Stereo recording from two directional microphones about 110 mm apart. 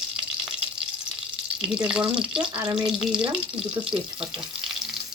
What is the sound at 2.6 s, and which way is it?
Speech, 50° right (ahead or behind).